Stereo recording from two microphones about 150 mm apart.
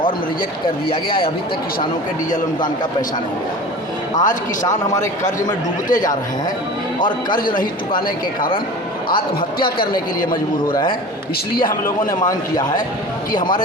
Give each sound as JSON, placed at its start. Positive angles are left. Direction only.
{"t": 4.2, "sound": "speech", "side_deg": 60}
{"t": 5.9, "sound": "speech", "side_deg": 60}
{"t": 7.3, "sound": "speech", "side_deg": 70}
{"t": 12.2, "sound": "a man's voice", "side_deg": 25}